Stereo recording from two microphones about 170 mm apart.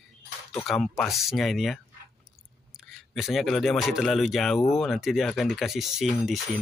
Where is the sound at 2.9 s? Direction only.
Centre (ahead or behind).